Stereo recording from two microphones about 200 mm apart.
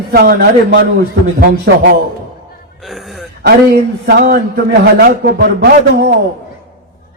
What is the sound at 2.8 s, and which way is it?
Speech, centre (ahead or behind).